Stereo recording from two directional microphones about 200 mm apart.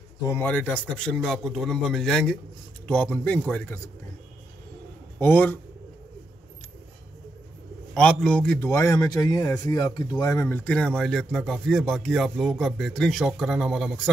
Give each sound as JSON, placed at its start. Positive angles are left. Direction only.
{"t": 0.3, "sound": "a man's voice", "side_deg": 10}
{"t": 5.2, "sound": "a man's voice", "side_deg": 10}
{"t": 7.9, "sound": "a man's voice", "side_deg": 5}